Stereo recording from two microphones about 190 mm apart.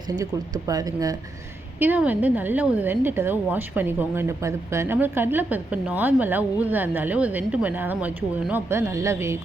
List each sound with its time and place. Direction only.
0.2 s a woman's voice: 20° right (ahead or behind)